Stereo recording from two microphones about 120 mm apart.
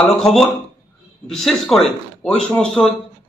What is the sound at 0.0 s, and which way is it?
A man's voice, 5° left (ahead or behind).